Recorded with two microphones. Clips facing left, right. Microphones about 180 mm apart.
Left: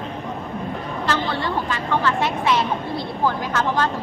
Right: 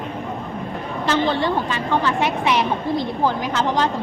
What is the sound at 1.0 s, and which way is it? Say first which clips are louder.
A woman's voice: right 5 dB; 20° right (ahead or behind).